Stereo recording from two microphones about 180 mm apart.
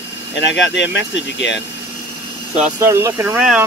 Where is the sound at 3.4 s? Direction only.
5° right (ahead or behind).